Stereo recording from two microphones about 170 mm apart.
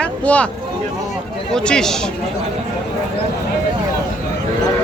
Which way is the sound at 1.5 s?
5° left (ahead or behind).